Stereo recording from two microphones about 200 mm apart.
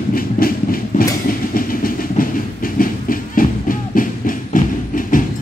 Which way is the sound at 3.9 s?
45° left (ahead or behind).